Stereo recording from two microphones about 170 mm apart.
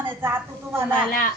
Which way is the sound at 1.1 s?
55° left (ahead or behind).